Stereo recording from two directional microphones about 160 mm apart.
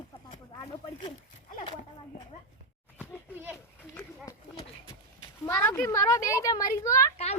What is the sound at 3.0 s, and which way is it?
Children playing, 10° right (ahead or behind).